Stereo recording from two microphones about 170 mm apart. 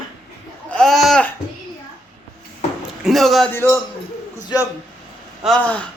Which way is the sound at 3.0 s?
Centre (ahead or behind).